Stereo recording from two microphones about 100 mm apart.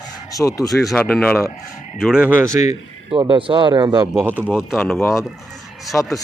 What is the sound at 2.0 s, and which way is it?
Speech, 5° right (ahead or behind).